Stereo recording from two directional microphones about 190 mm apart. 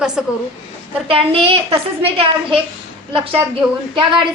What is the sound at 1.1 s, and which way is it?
A woman's voice, 30° right (ahead or behind).